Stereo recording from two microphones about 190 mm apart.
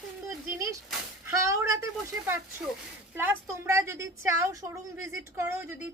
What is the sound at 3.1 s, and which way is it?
A woman's voice, 10° right (ahead or behind).